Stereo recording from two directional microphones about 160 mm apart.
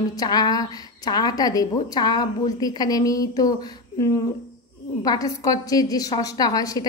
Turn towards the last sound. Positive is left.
turn(degrees=25)  # may be behind; listen again after turning